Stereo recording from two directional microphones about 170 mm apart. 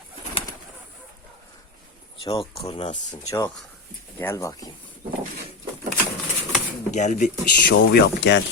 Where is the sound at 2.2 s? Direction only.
35° left (ahead or behind).